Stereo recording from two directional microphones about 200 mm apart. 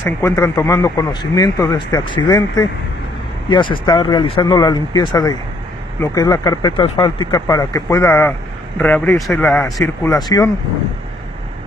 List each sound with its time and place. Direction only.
0.0 s speech: 15° left (ahead or behind)